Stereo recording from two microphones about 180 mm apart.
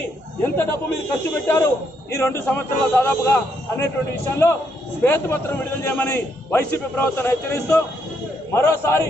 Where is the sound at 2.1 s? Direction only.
15° left (ahead or behind).